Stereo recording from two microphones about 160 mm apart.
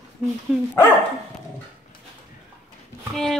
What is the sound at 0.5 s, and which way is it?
Speech, centre (ahead or behind).